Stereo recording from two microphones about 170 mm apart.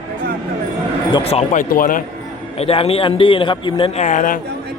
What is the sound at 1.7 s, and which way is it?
Speech, 55° left (ahead or behind).